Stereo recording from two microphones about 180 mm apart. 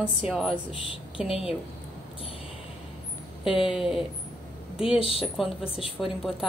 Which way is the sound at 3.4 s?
5° right (ahead or behind).